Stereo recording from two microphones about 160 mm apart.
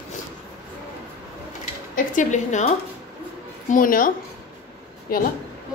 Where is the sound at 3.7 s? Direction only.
60° left (ahead or behind).